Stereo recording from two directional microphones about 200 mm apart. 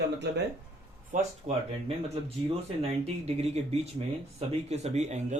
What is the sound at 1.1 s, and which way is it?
Speech, 40° right (ahead or behind).